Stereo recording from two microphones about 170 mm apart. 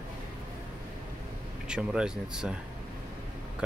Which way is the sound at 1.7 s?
5° right (ahead or behind).